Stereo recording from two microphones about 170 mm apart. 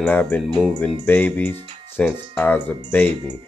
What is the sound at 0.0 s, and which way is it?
Speech, 10° left (ahead or behind).